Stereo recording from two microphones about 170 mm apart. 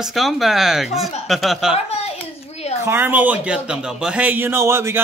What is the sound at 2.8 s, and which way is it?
A man's voice, 15° right (ahead or behind).